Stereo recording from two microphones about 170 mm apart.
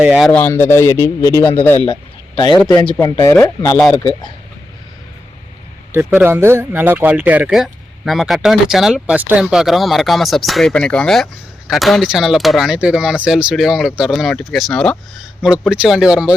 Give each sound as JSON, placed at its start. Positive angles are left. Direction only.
{"t": 0.0, "sound": "speech", "side_deg": -5}
{"t": 0.3, "sound": "speech", "side_deg": 15}
{"t": 1.9, "sound": "speech", "side_deg": 30}
{"t": 6.1, "sound": "speech", "side_deg": -10}